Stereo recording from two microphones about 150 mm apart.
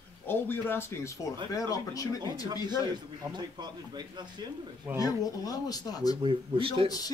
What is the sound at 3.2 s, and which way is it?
Speech, 30° right (ahead or behind).